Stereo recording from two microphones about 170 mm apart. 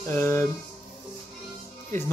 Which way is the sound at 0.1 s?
15° left (ahead or behind).